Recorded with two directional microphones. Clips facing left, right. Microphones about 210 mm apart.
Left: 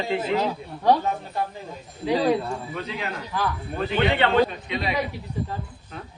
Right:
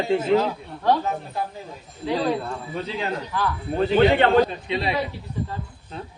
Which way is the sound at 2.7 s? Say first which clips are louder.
Right 3 dB; 30° right (ahead or behind).